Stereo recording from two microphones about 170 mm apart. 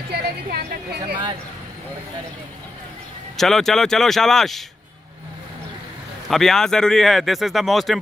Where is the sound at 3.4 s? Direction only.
Centre (ahead or behind).